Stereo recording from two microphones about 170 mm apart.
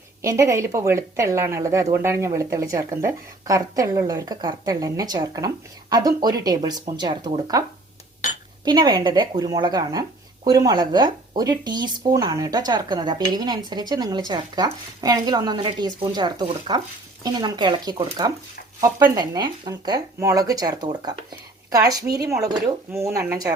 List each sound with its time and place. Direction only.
0.2 s speech: 15° right (ahead or behind)
8.6 s speech: 25° right (ahead or behind)